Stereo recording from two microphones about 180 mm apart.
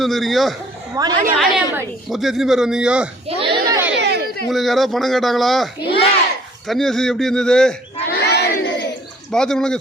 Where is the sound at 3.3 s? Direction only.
30° right (ahead or behind).